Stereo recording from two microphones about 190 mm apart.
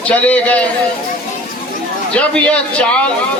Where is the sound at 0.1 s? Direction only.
5° left (ahead or behind).